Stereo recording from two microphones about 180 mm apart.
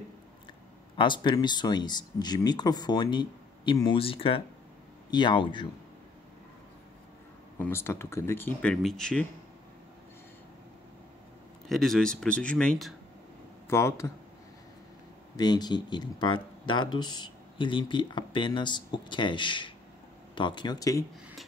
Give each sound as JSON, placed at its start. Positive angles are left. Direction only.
{"t": 0.9, "sound": "speech", "side_deg": 25}
{"t": 7.5, "sound": "speech", "side_deg": 15}
{"t": 11.7, "sound": "speech", "side_deg": 0}
{"t": 13.7, "sound": "speech", "side_deg": 15}
{"t": 15.3, "sound": "speech", "side_deg": 25}